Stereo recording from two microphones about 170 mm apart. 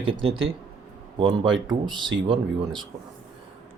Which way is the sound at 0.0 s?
30° right (ahead or behind).